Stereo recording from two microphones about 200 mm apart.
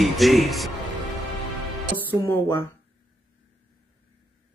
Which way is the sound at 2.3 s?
10° left (ahead or behind).